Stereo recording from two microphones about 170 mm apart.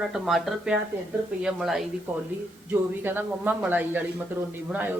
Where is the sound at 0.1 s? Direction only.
Centre (ahead or behind).